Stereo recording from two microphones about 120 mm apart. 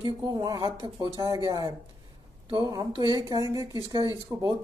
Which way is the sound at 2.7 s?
35° right (ahead or behind).